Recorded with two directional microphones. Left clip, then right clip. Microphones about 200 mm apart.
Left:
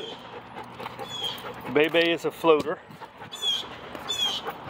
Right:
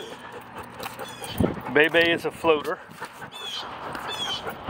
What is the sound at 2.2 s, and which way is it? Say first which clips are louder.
Speech: left 1 dB; 25° left (ahead or behind).